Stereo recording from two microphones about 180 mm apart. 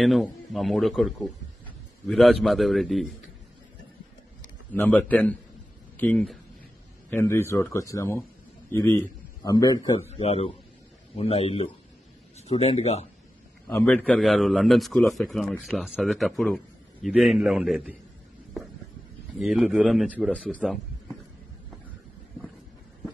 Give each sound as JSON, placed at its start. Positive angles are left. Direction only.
{"t": 0.0, "sound": "a man's voice", "side_deg": 0}
{"t": 4.7, "sound": "a man's voice", "side_deg": 10}
{"t": 9.8, "sound": "a man's voice", "side_deg": 35}
{"t": 13.7, "sound": "a man's voice", "side_deg": 10}
{"t": 19.3, "sound": "a man's voice", "side_deg": -5}